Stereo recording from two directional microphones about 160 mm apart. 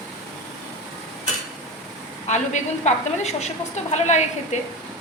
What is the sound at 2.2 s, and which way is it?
A woman's voice, 45° left (ahead or behind).